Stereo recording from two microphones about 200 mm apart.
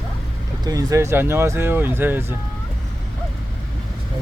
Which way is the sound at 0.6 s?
20° right (ahead or behind).